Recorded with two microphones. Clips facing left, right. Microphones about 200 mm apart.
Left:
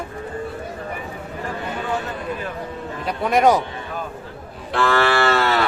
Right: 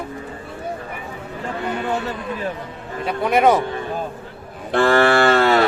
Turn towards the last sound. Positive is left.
turn(degrees=-50)  # may be behind; listen again after turning